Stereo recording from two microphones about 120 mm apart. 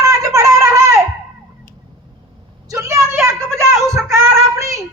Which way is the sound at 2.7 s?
25° right (ahead or behind).